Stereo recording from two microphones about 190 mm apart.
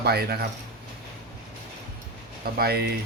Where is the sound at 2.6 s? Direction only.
55° right (ahead or behind).